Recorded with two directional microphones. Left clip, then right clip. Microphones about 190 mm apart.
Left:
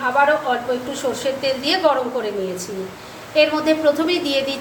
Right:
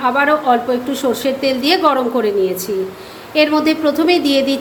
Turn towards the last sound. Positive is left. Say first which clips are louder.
# right 6 dB
turn(degrees=-30)  # may be behind; listen again after turning